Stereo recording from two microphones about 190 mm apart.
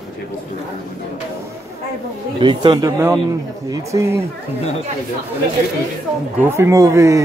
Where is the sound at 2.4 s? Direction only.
25° right (ahead or behind).